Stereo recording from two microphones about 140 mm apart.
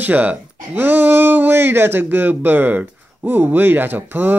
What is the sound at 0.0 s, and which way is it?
Speech, 10° right (ahead or behind).